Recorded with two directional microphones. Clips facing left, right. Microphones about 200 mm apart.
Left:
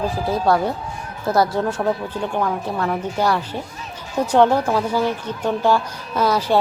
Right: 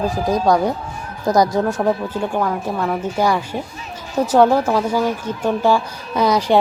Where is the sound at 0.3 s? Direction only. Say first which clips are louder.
Right 2 dB; 15° right (ahead or behind).